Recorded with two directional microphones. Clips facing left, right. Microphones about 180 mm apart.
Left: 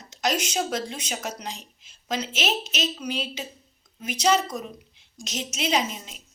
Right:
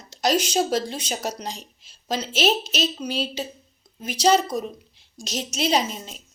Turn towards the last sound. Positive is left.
turn(degrees=-35)  # may be behind; listen again after turning